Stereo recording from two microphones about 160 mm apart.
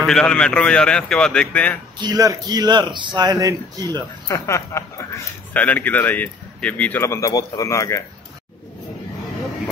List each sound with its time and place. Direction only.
0.0 s speech: 5° left (ahead or behind)
2.0 s a man's voice: 25° right (ahead or behind)
4.3 s speech: 20° left (ahead or behind)